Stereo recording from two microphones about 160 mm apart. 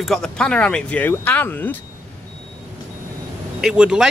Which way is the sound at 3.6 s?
5° right (ahead or behind).